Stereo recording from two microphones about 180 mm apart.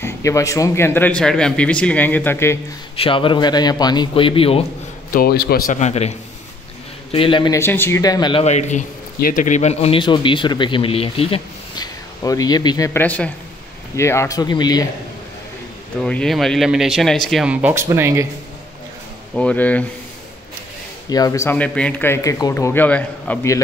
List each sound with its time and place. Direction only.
0.0 s speech: 15° left (ahead or behind)
3.0 s a man's voice: 30° left (ahead or behind)
5.1 s a man's voice: 60° left (ahead or behind)
5.8 s a man's voice: 40° left (ahead or behind)
7.5 s a man's voice: 15° left (ahead or behind)
16.0 s speech: 5° left (ahead or behind); by 18.2 s 15° right (ahead or behind)
19.3 s speech: 5° left (ahead or behind)
21.1 s speech: 20° left (ahead or behind)